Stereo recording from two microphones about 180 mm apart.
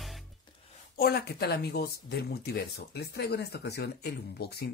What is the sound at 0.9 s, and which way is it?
Speech, 60° left (ahead or behind).